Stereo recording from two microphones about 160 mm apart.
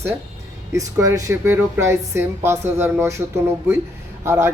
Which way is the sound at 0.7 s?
20° right (ahead or behind).